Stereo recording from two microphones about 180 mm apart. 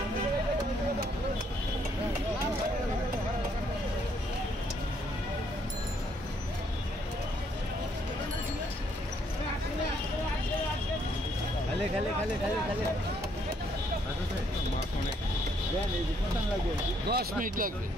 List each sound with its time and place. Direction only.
17.1 s speech: 55° right (ahead or behind)